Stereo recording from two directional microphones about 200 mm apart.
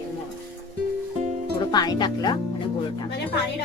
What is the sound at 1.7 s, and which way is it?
Speech, 20° left (ahead or behind).